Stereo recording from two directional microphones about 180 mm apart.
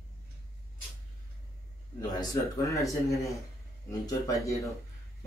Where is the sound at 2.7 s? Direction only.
15° left (ahead or behind).